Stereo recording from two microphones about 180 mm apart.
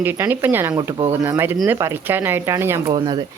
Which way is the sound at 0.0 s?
10° right (ahead or behind).